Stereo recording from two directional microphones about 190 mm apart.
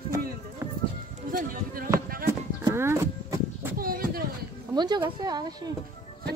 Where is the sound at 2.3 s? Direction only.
15° right (ahead or behind).